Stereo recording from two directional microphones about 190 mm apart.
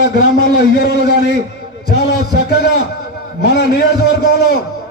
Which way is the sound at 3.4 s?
60° left (ahead or behind).